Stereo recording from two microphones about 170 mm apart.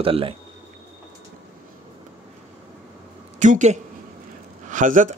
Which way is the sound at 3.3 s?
45° right (ahead or behind).